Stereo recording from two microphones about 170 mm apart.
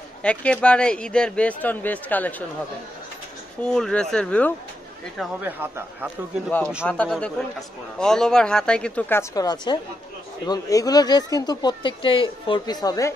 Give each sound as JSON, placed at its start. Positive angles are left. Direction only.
{"t": 0.2, "sound": "speech", "side_deg": 5}
{"t": 3.6, "sound": "speech", "side_deg": 5}
{"t": 5.4, "sound": "a man's voice", "side_deg": -10}
{"t": 6.9, "sound": "speech", "side_deg": 5}
{"t": 9.3, "sound": "speech", "side_deg": 20}